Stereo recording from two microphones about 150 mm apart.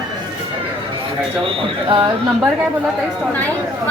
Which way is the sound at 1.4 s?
35° right (ahead or behind).